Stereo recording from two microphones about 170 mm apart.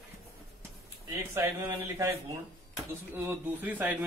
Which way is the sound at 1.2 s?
15° right (ahead or behind).